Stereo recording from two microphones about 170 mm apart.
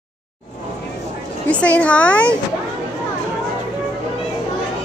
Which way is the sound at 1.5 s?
10° left (ahead or behind).